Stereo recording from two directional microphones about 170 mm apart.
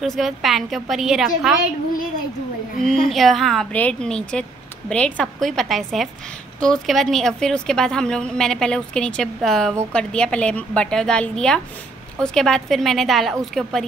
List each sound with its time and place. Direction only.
0.0 s a woman's voice: centre (ahead or behind)
2.8 s a woman's voice: centre (ahead or behind)